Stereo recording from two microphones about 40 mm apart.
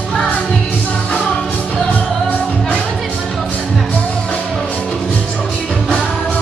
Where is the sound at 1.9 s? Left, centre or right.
Left.